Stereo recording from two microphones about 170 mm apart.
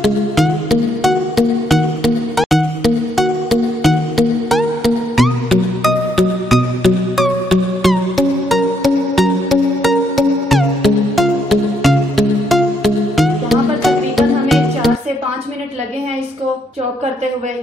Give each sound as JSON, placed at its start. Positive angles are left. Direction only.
{"t": 0.0, "sound": "music", "side_deg": 0}